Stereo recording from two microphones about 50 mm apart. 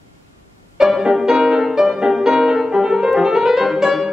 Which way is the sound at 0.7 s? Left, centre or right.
Centre.